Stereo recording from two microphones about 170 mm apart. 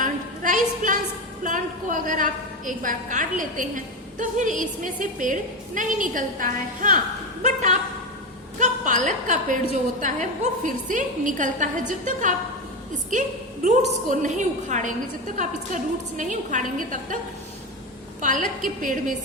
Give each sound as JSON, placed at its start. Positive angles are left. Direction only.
{"t": 0.0, "sound": "a sound", "side_deg": -50}
{"t": 1.5, "sound": "a woman's voice", "side_deg": -50}
{"t": 18.2, "sound": "a woman's voice", "side_deg": -50}